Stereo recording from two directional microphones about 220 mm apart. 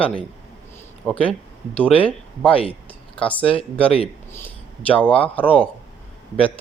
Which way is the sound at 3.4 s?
25° left (ahead or behind).